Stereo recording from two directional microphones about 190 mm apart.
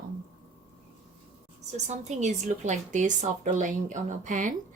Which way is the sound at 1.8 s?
35° right (ahead or behind).